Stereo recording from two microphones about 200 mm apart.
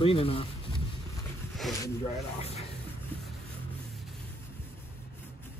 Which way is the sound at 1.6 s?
Centre (ahead or behind).